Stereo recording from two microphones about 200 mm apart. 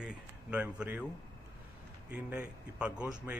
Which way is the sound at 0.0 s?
5° right (ahead or behind).